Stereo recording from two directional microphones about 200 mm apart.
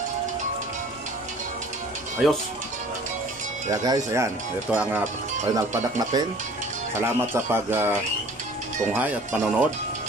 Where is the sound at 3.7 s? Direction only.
15° right (ahead or behind).